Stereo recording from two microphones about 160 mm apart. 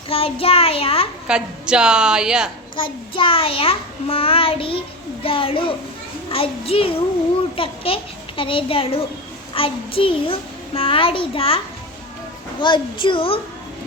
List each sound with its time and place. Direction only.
0.1 s a child's voice: 35° left (ahead or behind)
1.3 s a woman's voice: 5° right (ahead or behind)
2.7 s a child's voice: 30° left (ahead or behind)